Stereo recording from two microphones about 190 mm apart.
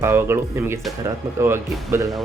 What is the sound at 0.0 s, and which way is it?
Speech, 15° right (ahead or behind).